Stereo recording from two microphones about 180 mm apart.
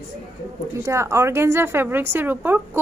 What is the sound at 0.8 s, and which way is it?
Speech, 15° right (ahead or behind).